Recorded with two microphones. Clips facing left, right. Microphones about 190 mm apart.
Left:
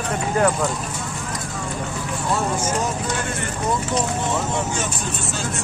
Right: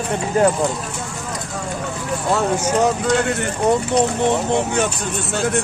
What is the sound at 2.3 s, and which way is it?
Speech, 70° right (ahead or behind).